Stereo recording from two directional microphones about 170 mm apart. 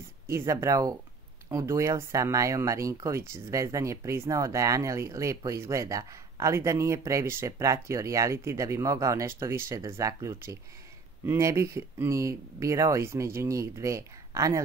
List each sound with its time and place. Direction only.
0.3 s speech: 15° right (ahead or behind)